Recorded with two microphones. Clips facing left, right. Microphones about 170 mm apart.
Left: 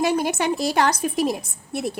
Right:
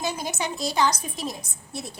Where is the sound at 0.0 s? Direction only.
65° left (ahead or behind).